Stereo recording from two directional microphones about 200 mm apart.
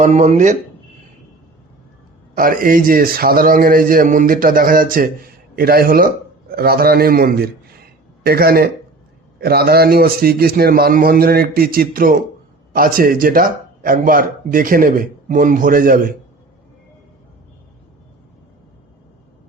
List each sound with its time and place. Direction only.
0.0 s speech: 35° right (ahead or behind)
2.3 s a man's voice: 45° right (ahead or behind)